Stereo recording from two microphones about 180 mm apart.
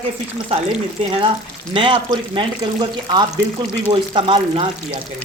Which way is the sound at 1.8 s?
25° right (ahead or behind).